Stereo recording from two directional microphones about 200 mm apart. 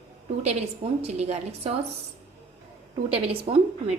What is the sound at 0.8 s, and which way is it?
Speech, 30° right (ahead or behind).